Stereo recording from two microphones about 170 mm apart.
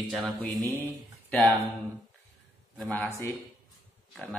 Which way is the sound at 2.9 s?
10° left (ahead or behind).